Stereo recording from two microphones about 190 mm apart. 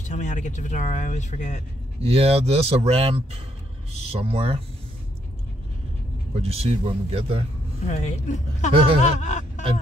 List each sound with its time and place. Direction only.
0.0 s speech: 40° left (ahead or behind)
2.0 s speech: 30° right (ahead or behind)
6.3 s speech: 30° right (ahead or behind)
7.8 s speech: 40° left (ahead or behind)